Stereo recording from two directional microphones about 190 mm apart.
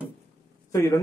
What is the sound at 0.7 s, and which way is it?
Speech, 15° left (ahead or behind).